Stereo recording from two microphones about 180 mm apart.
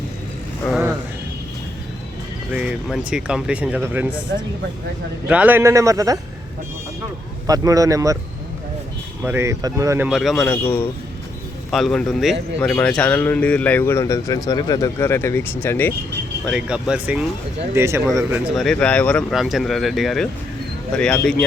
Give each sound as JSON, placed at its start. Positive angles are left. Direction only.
{"t": 2.5, "sound": "speech", "side_deg": -5}
{"t": 5.3, "sound": "a man's voice", "side_deg": -10}
{"t": 7.4, "sound": "speech", "side_deg": -20}
{"t": 9.2, "sound": "a man's voice", "side_deg": -15}
{"t": 10.1, "sound": "speech", "side_deg": 0}
{"t": 10.4, "sound": "speech", "side_deg": 10}
{"t": 16.5, "sound": "speech", "side_deg": -5}